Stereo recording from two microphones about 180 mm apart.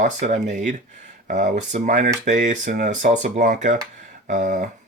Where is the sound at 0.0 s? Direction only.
40° right (ahead or behind).